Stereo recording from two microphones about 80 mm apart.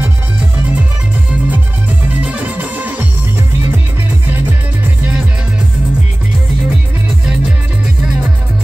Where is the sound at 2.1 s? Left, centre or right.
Centre.